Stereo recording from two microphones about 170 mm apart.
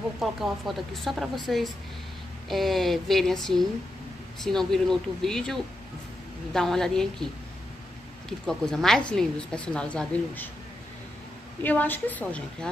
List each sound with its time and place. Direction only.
0.2 s a woman's voice: centre (ahead or behind)
8.3 s a woman's voice: centre (ahead or behind)
11.6 s a woman's voice: 10° left (ahead or behind)